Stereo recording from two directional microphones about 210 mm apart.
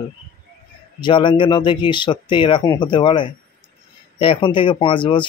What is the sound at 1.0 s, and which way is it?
Speech, 20° left (ahead or behind).